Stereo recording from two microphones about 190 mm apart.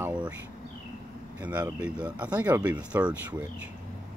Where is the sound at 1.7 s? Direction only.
5° right (ahead or behind).